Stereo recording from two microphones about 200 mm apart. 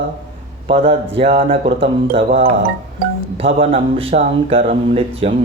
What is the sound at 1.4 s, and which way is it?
Speech, 45° right (ahead or behind).